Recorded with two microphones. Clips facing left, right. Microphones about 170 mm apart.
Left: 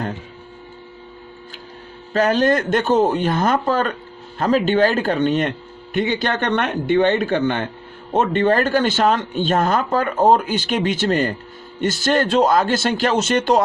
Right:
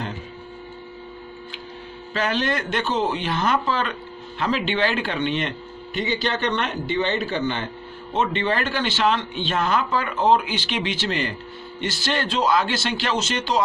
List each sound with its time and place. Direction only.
2.1 s speech: 45° left (ahead or behind)